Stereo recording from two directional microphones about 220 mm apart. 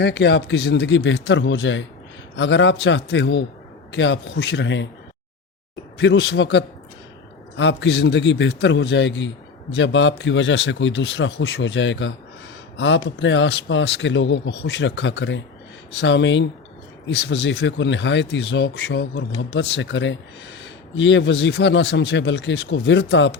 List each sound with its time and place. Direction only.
0.0 s a man's voice: 50° left (ahead or behind)
6.0 s a man's voice: 55° left (ahead or behind)